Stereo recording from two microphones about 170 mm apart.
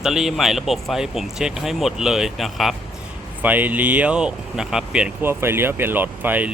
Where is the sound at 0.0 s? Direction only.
Centre (ahead or behind).